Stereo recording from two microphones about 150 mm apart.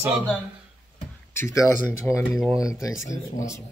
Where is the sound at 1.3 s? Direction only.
20° left (ahead or behind).